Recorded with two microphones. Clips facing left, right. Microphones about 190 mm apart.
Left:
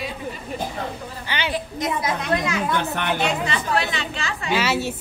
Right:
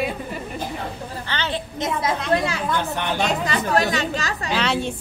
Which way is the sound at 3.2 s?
40° right (ahead or behind).